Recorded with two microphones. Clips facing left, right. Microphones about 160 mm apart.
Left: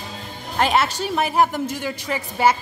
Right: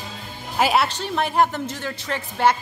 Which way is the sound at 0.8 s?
10° left (ahead or behind).